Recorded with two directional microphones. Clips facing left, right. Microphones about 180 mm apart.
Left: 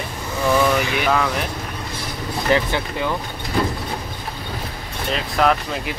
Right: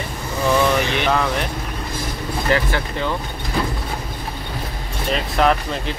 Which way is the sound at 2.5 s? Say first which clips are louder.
Left 2 dB; 15° left (ahead or behind).